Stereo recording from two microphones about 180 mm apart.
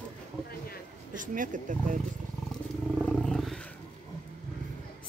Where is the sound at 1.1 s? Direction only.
45° right (ahead or behind).